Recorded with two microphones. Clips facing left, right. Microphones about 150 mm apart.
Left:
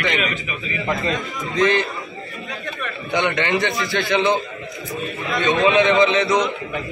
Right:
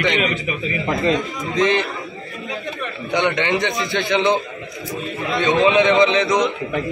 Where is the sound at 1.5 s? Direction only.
20° right (ahead or behind).